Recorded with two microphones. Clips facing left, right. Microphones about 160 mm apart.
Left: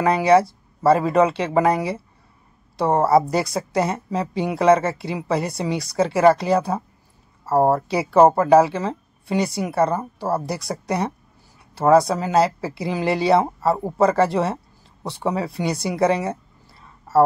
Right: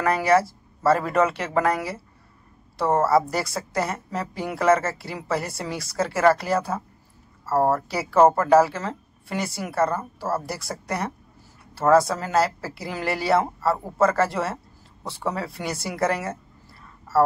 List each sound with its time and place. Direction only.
0.0 s a woman's voice: 20° left (ahead or behind)